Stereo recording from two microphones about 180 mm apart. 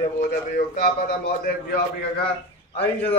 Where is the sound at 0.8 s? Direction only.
60° left (ahead or behind).